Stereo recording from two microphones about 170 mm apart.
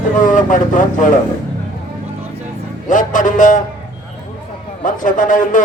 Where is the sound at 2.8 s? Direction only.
50° left (ahead or behind).